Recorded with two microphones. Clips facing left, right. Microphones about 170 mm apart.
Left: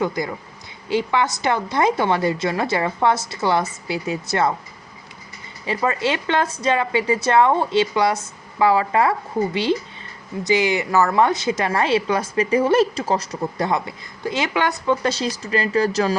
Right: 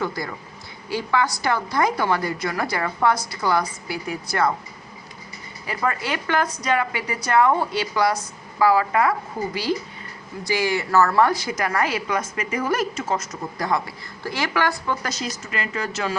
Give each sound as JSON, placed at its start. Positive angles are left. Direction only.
{"t": 0.0, "sound": "a woman's voice", "side_deg": 20}
{"t": 5.6, "sound": "a woman's voice", "side_deg": 25}